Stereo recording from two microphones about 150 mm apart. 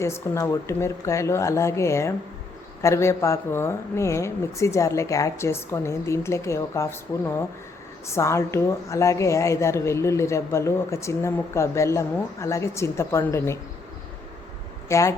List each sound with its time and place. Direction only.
0.0 s a woman's voice: 20° left (ahead or behind)
14.8 s speech: 20° left (ahead or behind)